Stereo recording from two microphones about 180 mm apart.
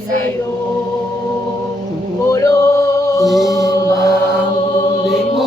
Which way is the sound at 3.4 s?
20° left (ahead or behind).